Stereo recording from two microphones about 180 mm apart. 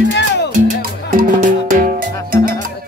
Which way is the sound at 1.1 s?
50° right (ahead or behind).